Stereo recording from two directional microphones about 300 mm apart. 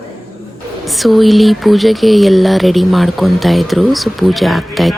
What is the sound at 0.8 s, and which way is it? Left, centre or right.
Speech, centre.